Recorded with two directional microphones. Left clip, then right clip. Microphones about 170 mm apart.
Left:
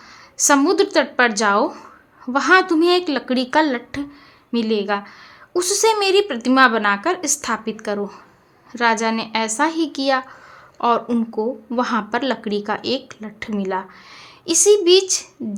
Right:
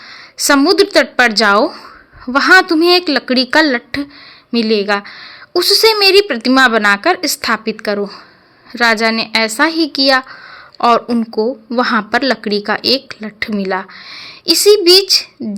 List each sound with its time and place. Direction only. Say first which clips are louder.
0.1 s a woman's voice: right 4 dB; 15° right (ahead or behind)
11.1 s speech: right 5 dB; 10° right (ahead or behind)
11.3 s a woman's voice: right 8 dB; 20° right (ahead or behind)